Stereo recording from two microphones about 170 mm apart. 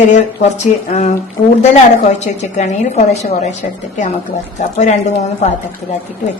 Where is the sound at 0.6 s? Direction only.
45° left (ahead or behind).